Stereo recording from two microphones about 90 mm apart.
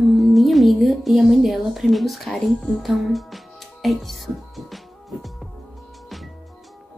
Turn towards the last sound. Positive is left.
turn(degrees=0)  # may be behind; listen again after turning